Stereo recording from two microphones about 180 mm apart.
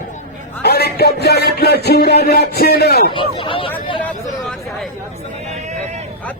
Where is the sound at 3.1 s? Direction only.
30° left (ahead or behind).